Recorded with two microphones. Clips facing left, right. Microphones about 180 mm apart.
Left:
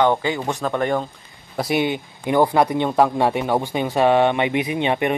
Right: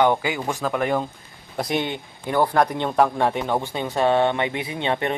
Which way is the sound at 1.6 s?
10° left (ahead or behind).